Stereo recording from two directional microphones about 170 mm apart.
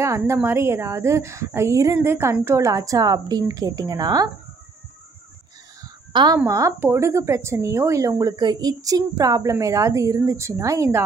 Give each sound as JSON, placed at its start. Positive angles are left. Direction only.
{"t": 0.0, "sound": "a woman's voice", "side_deg": -15}
{"t": 5.8, "sound": "speech", "side_deg": -20}